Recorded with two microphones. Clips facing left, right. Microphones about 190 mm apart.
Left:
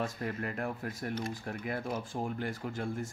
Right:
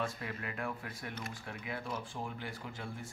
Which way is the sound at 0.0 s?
45° left (ahead or behind).